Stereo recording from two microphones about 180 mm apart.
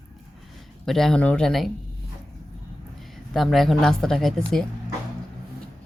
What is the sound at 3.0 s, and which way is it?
A woman's voice, centre (ahead or behind).